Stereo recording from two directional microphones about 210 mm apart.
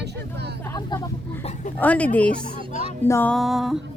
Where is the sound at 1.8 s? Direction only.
5° left (ahead or behind).